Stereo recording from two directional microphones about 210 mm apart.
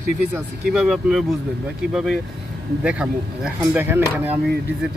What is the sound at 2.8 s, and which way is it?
Speech, 5° right (ahead or behind).